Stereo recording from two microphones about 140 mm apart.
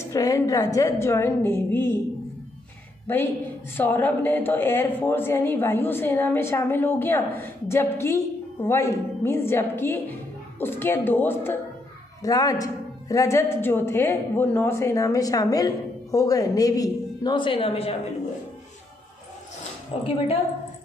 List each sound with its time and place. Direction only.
0.0 s speech: 25° left (ahead or behind)
3.7 s a woman's voice: 15° left (ahead or behind)
12.2 s speech: 25° left (ahead or behind); by 17.9 s 45° left (ahead or behind)
19.9 s a woman's voice: 45° left (ahead or behind)